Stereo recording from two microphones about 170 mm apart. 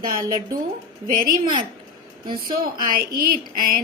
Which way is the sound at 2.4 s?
55° right (ahead or behind).